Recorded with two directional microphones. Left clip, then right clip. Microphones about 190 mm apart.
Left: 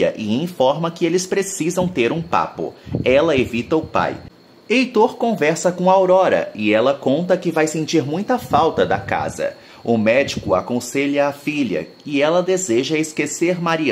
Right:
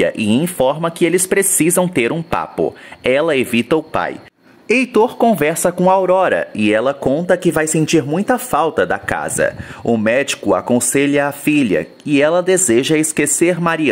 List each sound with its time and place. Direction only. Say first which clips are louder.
0.0 s speech: right 3 dB; 30° right (ahead or behind); by 9.5 s 45° right (ahead or behind)
9.8 s speech: right 1 dB; 30° right (ahead or behind)
10.1 s speech: right 2 dB; 40° right (ahead or behind)